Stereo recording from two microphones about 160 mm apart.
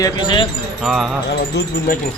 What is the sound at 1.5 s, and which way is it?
Speech, 90° left.